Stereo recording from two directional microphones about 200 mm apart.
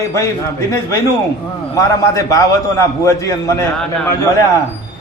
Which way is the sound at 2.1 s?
15° left (ahead or behind).